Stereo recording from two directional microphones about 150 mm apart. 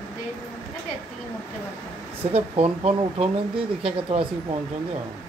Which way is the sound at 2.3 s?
40° right (ahead or behind).